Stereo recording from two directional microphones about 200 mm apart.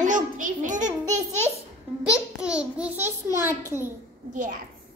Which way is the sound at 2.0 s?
5° right (ahead or behind).